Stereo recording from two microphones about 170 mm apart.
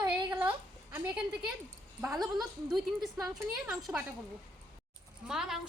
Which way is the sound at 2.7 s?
Centre (ahead or behind).